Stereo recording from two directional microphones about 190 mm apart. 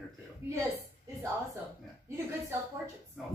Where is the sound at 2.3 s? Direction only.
15° right (ahead or behind).